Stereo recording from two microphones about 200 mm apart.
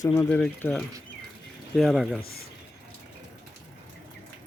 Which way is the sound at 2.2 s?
50° left (ahead or behind).